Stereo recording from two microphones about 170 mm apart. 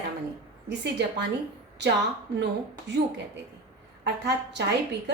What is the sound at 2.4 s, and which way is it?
Speech, 90° right.